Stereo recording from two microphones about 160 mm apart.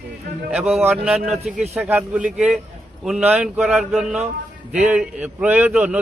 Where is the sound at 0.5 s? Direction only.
Centre (ahead or behind).